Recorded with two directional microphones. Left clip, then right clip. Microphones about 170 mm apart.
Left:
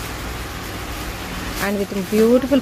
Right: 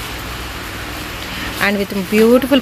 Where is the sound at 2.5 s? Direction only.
10° right (ahead or behind).